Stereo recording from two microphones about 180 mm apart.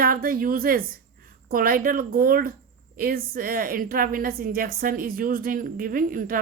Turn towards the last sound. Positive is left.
turn(degrees=-50)  # may be behind; listen again after turning